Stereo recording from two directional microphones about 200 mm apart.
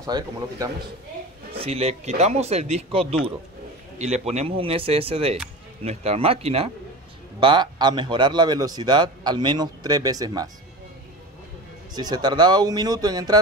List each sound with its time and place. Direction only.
0.0 s speech: 15° right (ahead or behind)
1.5 s a man's voice: 30° right (ahead or behind)
11.9 s a man's voice: 20° right (ahead or behind)